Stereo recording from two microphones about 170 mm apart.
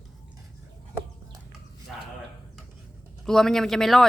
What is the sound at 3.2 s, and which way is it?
Speech, 5° left (ahead or behind).